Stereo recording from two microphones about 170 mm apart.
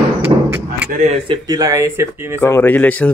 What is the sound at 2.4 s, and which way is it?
Speech, 15° left (ahead or behind).